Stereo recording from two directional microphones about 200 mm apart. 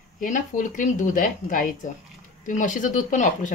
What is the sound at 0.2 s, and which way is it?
A woman's voice, 40° left (ahead or behind).